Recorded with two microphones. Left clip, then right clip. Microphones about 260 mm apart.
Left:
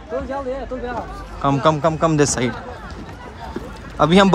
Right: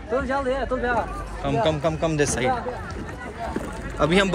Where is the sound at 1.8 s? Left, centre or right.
Left.